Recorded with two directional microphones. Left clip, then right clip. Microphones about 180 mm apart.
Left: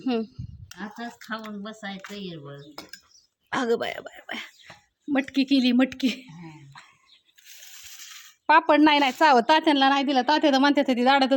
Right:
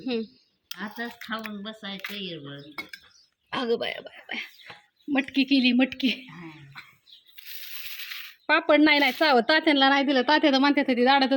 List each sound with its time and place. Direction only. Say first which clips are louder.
0.0 s a woman's voice: left 2 dB; 25° left (ahead or behind)
1.2 s speech: right 1 dB; 70° left (ahead or behind)
2.7 s cutlery: right 4 dB; 35° left (ahead or behind)
3.5 s a woman's voice: left 2 dB; 25° left (ahead or behind)
8.4 s a woman's voice: left 2 dB; 10° left (ahead or behind)